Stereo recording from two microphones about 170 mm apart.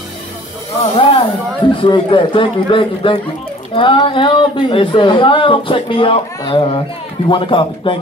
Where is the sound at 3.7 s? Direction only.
30° left (ahead or behind).